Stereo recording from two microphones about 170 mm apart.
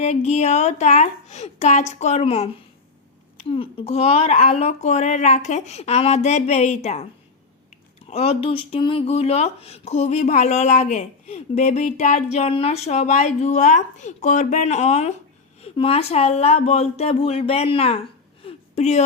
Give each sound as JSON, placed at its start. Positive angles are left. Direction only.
{"t": 0.0, "sound": "speech", "side_deg": 40}
{"t": 3.5, "sound": "speech", "side_deg": 35}
{"t": 8.1, "sound": "speech", "side_deg": 35}
{"t": 18.4, "sound": "a sound", "side_deg": 40}